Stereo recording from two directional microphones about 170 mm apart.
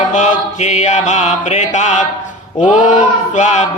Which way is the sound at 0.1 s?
45° left (ahead or behind).